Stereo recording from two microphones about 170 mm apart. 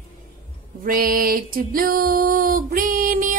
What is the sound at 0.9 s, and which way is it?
A woman's voice, 55° right (ahead or behind).